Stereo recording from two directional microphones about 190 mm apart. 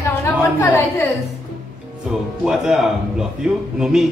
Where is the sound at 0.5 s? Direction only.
10° left (ahead or behind).